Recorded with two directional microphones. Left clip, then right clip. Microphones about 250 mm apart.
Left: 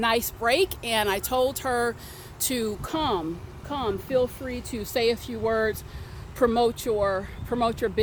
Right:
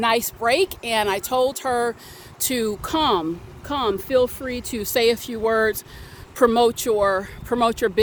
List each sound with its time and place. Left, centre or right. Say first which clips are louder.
0.0 s speech: right 4 dB; centre
2.4 s speech: right 5 dB; right